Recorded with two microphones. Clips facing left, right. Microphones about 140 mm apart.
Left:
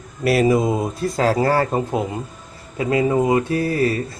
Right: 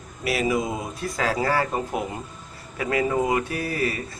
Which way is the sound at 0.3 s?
40° left (ahead or behind).